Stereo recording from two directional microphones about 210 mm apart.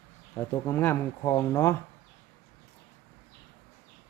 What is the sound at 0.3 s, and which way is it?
Speech, 10° left (ahead or behind).